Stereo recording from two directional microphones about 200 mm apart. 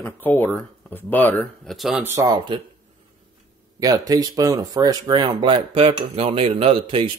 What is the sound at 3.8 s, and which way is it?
Speech, 20° right (ahead or behind).